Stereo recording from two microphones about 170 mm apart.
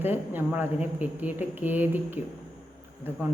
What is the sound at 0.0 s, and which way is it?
A woman's voice, 10° right (ahead or behind).